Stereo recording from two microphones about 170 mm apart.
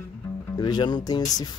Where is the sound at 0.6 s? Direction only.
25° left (ahead or behind).